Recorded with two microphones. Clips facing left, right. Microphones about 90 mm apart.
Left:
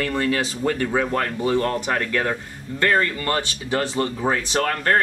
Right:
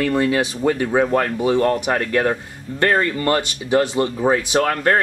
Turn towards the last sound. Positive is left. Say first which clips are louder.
# right 4 dB
turn(degrees=-10)  # may be behind; listen again after turning